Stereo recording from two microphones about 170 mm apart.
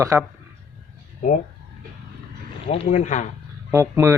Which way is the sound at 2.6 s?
35° left (ahead or behind).